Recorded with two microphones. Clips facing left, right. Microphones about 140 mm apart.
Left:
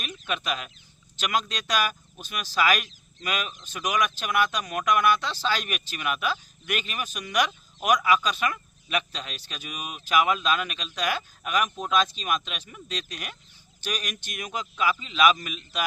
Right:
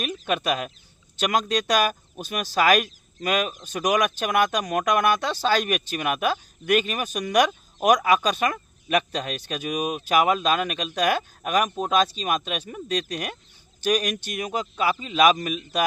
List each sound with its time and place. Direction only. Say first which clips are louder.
0.0 s a man's voice: right 7 dB; 45° right (ahead or behind)